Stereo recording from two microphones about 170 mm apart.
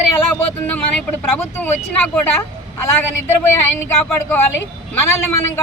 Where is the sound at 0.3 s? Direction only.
10° left (ahead or behind).